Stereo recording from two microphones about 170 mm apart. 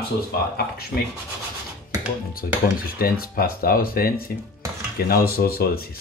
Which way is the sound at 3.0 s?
60° left (ahead or behind).